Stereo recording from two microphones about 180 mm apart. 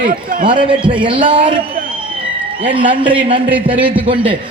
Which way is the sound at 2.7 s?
30° right (ahead or behind).